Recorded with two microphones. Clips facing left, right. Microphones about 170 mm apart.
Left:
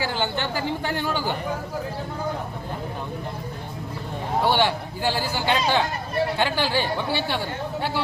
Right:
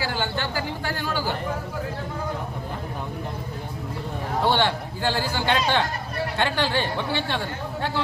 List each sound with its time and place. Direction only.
0.0 s speech: 20° left (ahead or behind)
4.5 s speech: 10° left (ahead or behind)